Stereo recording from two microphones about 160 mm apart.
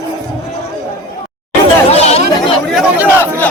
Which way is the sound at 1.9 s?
40° left (ahead or behind).